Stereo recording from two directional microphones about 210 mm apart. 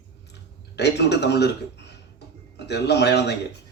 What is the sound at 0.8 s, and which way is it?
A man's voice, 50° left (ahead or behind).